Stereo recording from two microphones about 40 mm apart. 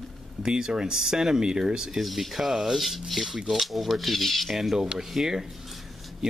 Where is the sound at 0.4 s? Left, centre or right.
Centre.